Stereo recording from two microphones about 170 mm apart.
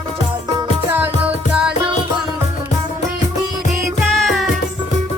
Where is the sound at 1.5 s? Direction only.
5° right (ahead or behind).